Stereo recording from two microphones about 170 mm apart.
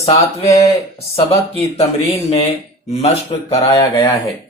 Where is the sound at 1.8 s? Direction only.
40° left (ahead or behind).